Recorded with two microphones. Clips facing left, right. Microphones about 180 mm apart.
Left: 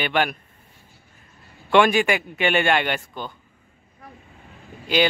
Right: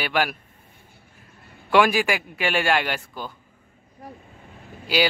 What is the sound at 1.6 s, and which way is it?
Speech, 5° right (ahead or behind).